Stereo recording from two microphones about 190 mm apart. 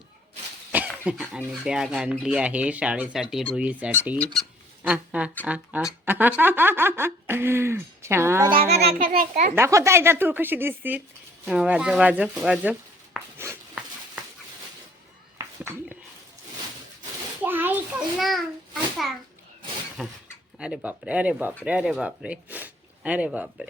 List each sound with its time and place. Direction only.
0.7 s dog: 10° right (ahead or behind)
1.4 s speech: 5° right (ahead or behind)
8.5 s a child's voice: 30° right (ahead or behind)
9.0 s a child's voice: 50° right (ahead or behind)
9.6 s speech: 15° right (ahead or behind)
13.2 s a sound: centre (ahead or behind)
17.4 s a sound: 10° right (ahead or behind)
20.0 s speech: centre (ahead or behind)